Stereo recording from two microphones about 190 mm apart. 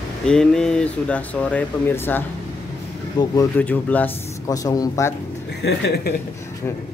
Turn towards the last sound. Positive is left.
turn(degrees=60)  # may be behind; listen again after turning